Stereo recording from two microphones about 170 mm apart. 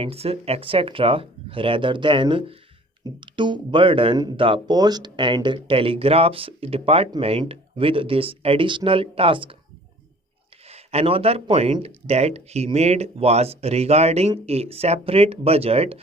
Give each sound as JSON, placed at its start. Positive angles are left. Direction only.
{"t": 0.0, "sound": "speech", "side_deg": -35}
{"t": 10.7, "sound": "speech", "side_deg": -35}